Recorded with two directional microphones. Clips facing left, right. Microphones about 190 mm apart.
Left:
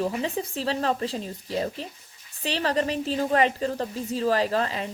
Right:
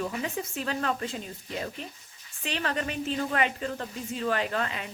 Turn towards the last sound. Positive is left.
turn(degrees=35)  # may be behind; listen again after turning